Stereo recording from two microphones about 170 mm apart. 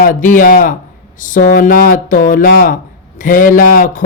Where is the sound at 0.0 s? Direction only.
50° left (ahead or behind).